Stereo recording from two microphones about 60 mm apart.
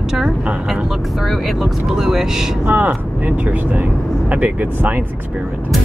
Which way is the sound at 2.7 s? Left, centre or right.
Right.